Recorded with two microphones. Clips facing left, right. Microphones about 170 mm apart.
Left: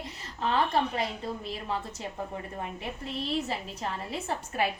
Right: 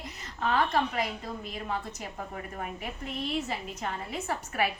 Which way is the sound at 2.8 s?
30° left (ahead or behind).